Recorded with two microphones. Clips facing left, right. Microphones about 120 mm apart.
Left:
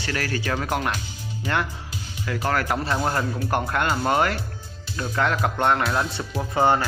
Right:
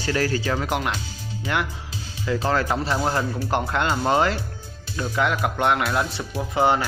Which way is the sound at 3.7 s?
20° right (ahead or behind).